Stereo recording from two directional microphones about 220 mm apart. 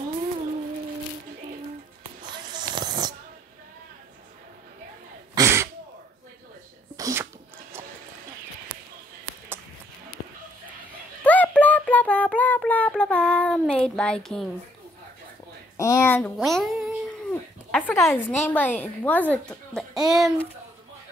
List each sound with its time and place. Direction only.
2.3 s a sound: 20° right (ahead or behind)
5.3 s sneeze: 15° right (ahead or behind)
7.0 s a sound: 15° right (ahead or behind)
11.2 s child singing: 5° left (ahead or behind)
15.8 s a child's voice: 10° left (ahead or behind)
16.3 s cat: centre (ahead or behind)
18.4 s a child's voice: 10° left (ahead or behind)